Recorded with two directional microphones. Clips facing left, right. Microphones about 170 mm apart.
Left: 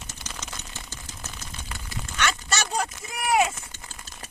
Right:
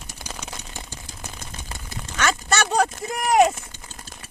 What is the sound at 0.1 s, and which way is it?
Typewriter, 10° right (ahead or behind).